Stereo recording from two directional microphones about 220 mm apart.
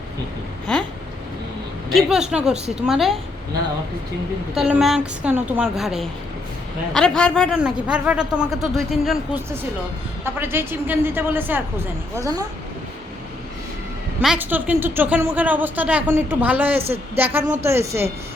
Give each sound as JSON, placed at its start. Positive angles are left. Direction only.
{"t": 0.7, "sound": "a man's voice", "side_deg": 5}
{"t": 1.9, "sound": "a man's voice", "side_deg": 0}
{"t": 4.5, "sound": "a man's voice", "side_deg": 0}
{"t": 14.2, "sound": "a woman's voice", "side_deg": -5}